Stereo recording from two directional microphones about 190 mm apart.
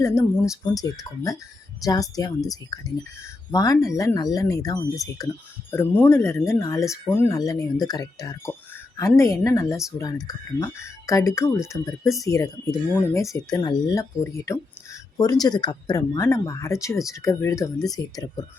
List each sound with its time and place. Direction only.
0.0 s speech: 15° left (ahead or behind)